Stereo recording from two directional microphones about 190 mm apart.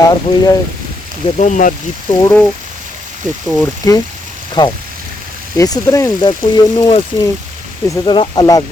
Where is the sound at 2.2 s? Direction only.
10° left (ahead or behind).